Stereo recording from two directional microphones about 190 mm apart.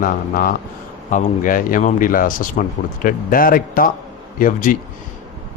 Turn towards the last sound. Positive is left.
turn(degrees=45)  # may be behind; listen again after turning